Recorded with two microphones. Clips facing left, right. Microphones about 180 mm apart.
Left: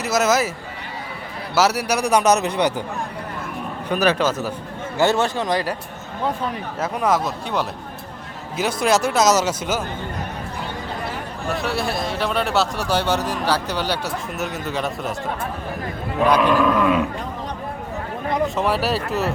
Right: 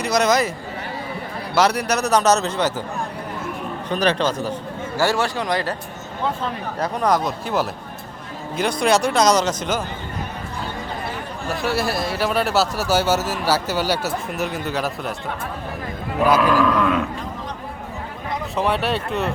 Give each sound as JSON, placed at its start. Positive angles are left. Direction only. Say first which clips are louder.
{"t": 0.0, "sound": "a man's voice", "louder": "right 1 dB", "side_deg": 5}
{"t": 1.5, "sound": "a man's voice", "louder": "even", "side_deg": 5}
{"t": 3.8, "sound": "a man's voice", "louder": "left 1 dB", "side_deg": 10}
{"t": 4.9, "sound": "speech", "louder": "left 2 dB", "side_deg": 20}
{"t": 6.7, "sound": "a man's voice", "louder": "right 1 dB", "side_deg": 5}
{"t": 11.4, "sound": "a man's voice", "louder": "right 1 dB", "side_deg": 0}
{"t": 16.2, "sound": "a man's voice", "louder": "even", "side_deg": -5}
{"t": 16.6, "sound": "a man's voice", "louder": "left 1 dB", "side_deg": 10}
{"t": 18.5, "sound": "a man's voice", "louder": "even", "side_deg": 0}